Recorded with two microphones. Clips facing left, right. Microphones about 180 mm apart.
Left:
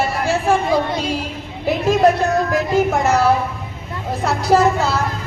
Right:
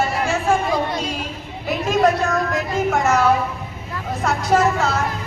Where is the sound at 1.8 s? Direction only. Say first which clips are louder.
Left 3 dB; 35° left (ahead or behind).